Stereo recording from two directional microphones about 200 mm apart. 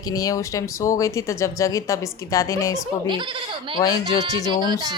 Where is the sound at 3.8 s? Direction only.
15° left (ahead or behind).